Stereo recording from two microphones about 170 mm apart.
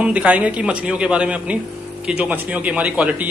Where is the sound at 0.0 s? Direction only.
5° right (ahead or behind).